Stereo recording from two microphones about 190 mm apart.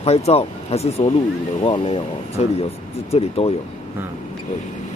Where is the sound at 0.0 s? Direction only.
35° left (ahead or behind).